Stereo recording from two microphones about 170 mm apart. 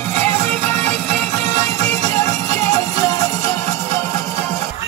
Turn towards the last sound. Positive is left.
turn(degrees=15)  # may be behind; listen again after turning